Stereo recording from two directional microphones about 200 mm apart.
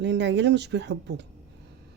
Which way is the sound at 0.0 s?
60° right (ahead or behind).